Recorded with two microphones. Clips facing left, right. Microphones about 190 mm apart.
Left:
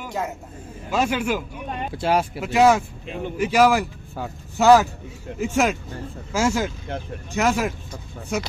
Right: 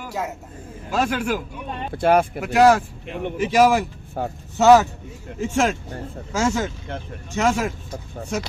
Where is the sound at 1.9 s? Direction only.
55° right (ahead or behind).